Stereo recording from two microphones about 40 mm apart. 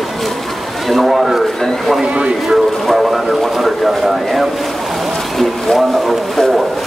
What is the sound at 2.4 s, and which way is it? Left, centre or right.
Speech, centre.